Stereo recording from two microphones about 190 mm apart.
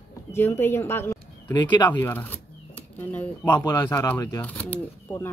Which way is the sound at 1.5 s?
25° left (ahead or behind).